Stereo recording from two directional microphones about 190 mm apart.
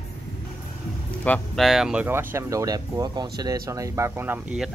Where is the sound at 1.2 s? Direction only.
5° left (ahead or behind).